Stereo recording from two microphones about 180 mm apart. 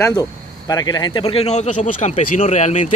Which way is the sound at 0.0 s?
20° left (ahead or behind).